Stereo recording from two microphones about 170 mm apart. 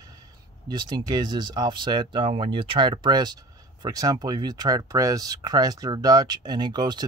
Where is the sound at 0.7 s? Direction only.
25° right (ahead or behind).